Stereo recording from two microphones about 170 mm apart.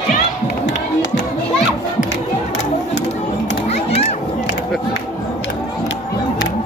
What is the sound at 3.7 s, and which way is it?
Children playing, 40° left (ahead or behind).